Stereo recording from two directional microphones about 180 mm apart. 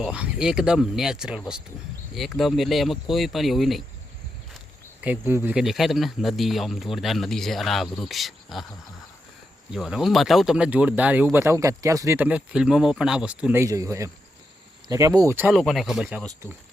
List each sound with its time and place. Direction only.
0.0 s speech: 5° right (ahead or behind)
5.0 s speech: 10° right (ahead or behind)
9.7 s speech: centre (ahead or behind)
15.4 s speech: centre (ahead or behind)